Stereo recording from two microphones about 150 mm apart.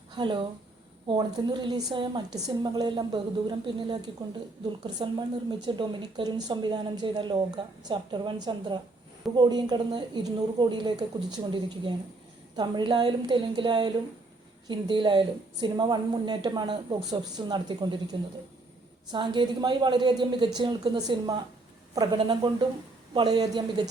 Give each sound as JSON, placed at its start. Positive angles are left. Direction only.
{"t": 0.2, "sound": "a woman's voice", "side_deg": -30}